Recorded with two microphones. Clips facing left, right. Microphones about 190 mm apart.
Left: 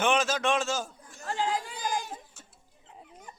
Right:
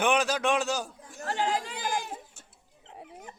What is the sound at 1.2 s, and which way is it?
Speech, 65° right (ahead or behind).